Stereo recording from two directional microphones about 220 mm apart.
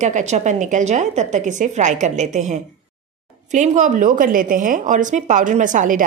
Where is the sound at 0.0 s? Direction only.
30° right (ahead or behind).